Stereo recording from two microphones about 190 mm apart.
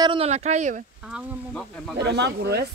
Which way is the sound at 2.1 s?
60° right (ahead or behind).